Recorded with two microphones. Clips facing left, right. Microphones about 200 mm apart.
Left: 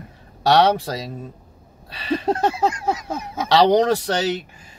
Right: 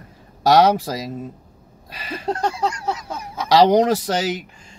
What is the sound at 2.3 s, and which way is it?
Speech, 20° left (ahead or behind).